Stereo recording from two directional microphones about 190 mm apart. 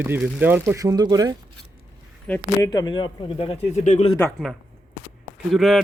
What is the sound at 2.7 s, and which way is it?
Speech, 20° left (ahead or behind).